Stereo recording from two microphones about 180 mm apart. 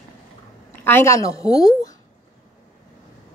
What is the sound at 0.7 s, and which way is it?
A woman's voice, 10° left (ahead or behind).